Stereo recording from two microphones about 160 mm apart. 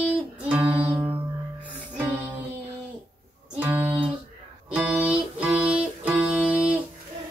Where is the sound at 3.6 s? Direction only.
10° right (ahead or behind).